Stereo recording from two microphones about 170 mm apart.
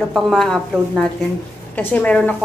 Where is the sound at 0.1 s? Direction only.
5° left (ahead or behind).